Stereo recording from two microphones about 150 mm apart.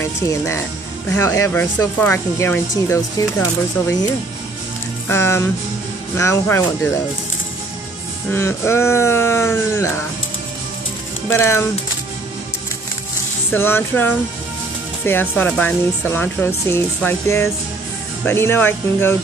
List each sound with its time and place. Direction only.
0.0 s speech: 20° left (ahead or behind)
5.0 s speech: 15° left (ahead or behind)
8.3 s speech: 15° left (ahead or behind)
11.2 s speech: 15° left (ahead or behind)
13.5 s speech: 15° left (ahead or behind)